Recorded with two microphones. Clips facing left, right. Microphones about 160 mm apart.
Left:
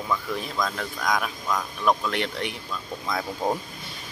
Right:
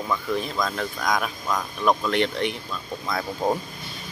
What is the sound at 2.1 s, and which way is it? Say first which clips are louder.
Speech: right 5 dB; 5° left (ahead or behind).